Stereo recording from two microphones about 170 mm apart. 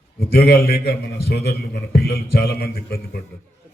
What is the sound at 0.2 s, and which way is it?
A man's voice, 65° left (ahead or behind).